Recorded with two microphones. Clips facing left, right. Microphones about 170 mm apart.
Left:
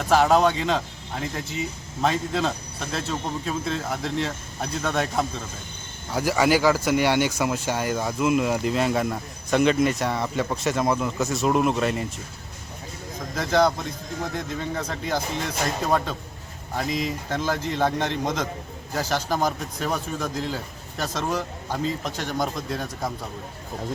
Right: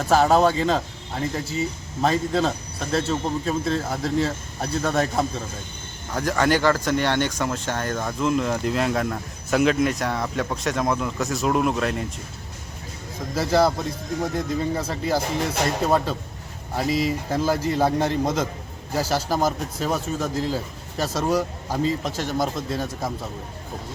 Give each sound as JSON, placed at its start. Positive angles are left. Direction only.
{"t": 0.1, "sound": "speech", "side_deg": 0}
{"t": 2.0, "sound": "speech", "side_deg": 0}
{"t": 13.3, "sound": "speech", "side_deg": -5}
{"t": 14.8, "sound": "speech", "side_deg": -5}